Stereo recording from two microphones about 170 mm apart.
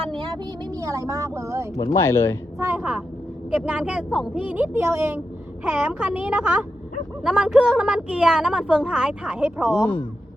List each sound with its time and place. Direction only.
0.0 s speech: 30° right (ahead or behind)
2.0 s speech: 15° left (ahead or behind)
2.6 s speech: 15° right (ahead or behind)